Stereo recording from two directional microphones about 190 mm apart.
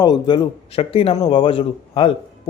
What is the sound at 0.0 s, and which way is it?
A man's voice, 25° left (ahead or behind).